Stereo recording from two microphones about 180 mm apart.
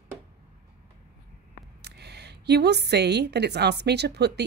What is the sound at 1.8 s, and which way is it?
Speech, 65° right (ahead or behind).